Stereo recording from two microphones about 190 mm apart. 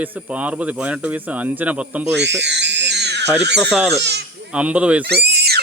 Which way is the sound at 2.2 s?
65° right (ahead or behind).